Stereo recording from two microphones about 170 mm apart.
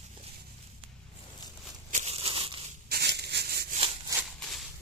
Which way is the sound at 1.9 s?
35° right (ahead or behind).